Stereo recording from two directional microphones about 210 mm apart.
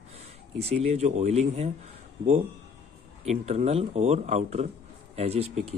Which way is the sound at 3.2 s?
30° right (ahead or behind).